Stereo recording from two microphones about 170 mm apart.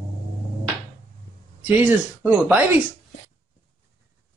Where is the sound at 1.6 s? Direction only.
10° right (ahead or behind).